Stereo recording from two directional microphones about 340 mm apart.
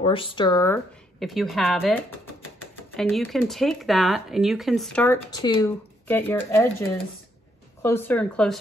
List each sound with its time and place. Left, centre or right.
0.0 s speech: centre
1.2 s speech: centre
3.0 s speech: centre
7.8 s speech: centre